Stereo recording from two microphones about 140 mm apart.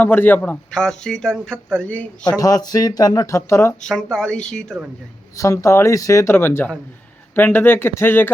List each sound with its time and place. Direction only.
0.0 s a man's voice: 15° left (ahead or behind)
2.4 s speech: 25° left (ahead or behind)
3.8 s speech: 5° left (ahead or behind)
5.4 s a man's voice: 25° left (ahead or behind)